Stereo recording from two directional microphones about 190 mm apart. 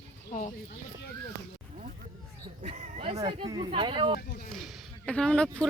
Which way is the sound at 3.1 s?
20° right (ahead or behind).